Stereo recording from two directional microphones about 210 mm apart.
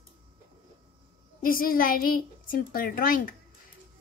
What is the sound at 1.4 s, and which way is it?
A child's voice, 40° left (ahead or behind).